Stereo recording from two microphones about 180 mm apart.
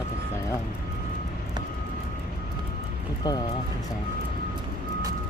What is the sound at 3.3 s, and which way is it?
Speech, 20° left (ahead or behind).